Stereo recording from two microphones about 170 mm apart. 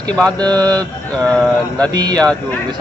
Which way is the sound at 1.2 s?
5° left (ahead or behind).